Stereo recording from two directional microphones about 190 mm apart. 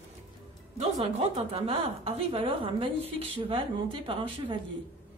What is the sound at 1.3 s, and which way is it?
Speech, 30° right (ahead or behind).